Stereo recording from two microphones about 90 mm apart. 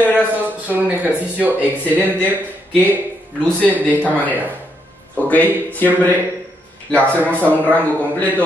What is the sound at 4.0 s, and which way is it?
A man's voice, 20° left (ahead or behind).